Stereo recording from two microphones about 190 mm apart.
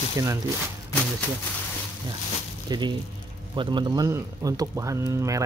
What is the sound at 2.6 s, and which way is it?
Speech, 20° right (ahead or behind).